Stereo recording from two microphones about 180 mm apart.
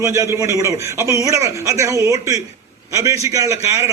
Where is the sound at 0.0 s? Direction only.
15° right (ahead or behind).